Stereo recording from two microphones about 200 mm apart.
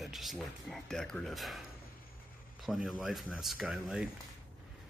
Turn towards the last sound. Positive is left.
turn(degrees=0)  # may be behind; listen again after turning